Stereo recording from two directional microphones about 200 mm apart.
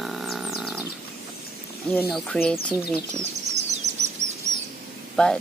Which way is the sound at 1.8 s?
10° left (ahead or behind).